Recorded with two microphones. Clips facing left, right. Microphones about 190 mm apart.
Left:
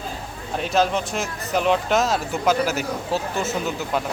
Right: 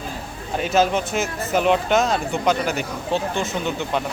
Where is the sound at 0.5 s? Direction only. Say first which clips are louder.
Right 2 dB; centre (ahead or behind).